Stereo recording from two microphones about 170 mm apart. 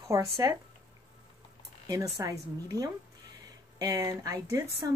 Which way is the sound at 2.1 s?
20° right (ahead or behind).